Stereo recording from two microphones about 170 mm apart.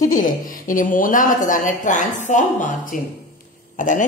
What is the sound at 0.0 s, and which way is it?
A woman's voice, 50° left (ahead or behind).